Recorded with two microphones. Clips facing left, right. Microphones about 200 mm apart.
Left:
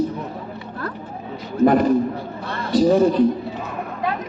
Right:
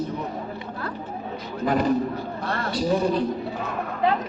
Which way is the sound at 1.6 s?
50° left (ahead or behind).